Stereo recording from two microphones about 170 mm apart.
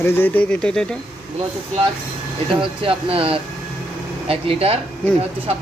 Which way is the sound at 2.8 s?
35° right (ahead or behind).